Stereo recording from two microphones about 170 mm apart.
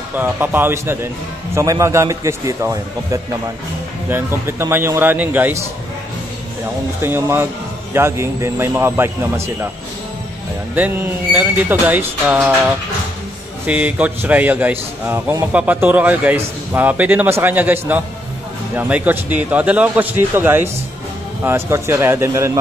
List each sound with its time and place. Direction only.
0.2 s a man's voice: 10° right (ahead or behind)
7.0 s a man's voice: 15° right (ahead or behind)
11.3 s a man's voice: 10° right (ahead or behind)
13.7 s a man's voice: 10° right (ahead or behind)